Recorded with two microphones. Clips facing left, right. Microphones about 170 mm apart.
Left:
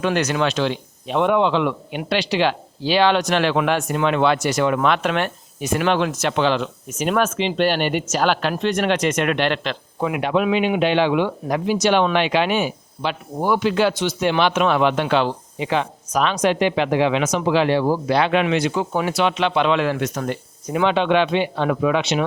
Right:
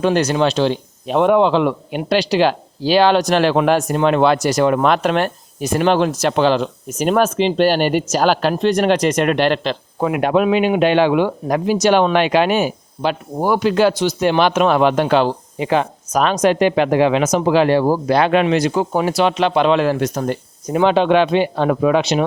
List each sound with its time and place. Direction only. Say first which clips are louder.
0.0 s a man's voice: right 4 dB; 30° right (ahead or behind)